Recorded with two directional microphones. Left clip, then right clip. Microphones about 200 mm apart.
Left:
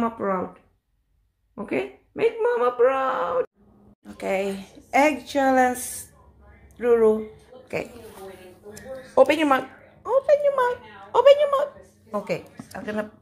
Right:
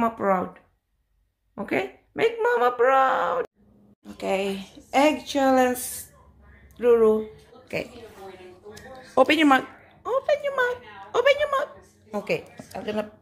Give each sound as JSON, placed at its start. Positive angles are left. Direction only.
{"t": 0.0, "sound": "speech", "side_deg": -15}
{"t": 1.5, "sound": "speech", "side_deg": -15}
{"t": 6.8, "sound": "a sound", "side_deg": -10}
{"t": 9.1, "sound": "a woman's voice", "side_deg": -20}